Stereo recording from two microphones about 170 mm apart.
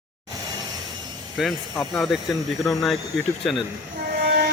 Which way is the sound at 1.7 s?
15° left (ahead or behind).